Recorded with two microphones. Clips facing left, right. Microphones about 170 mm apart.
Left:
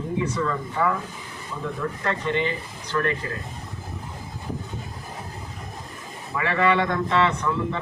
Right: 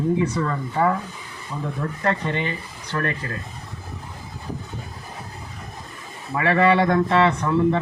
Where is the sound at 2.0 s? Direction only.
45° right (ahead or behind).